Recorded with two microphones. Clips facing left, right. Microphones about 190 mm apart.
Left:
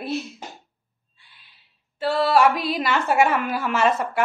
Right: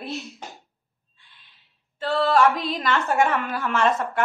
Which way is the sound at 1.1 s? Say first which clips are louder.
Left 1 dB; 10° left (ahead or behind).